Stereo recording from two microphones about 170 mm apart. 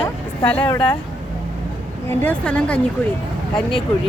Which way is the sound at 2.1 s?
10° left (ahead or behind).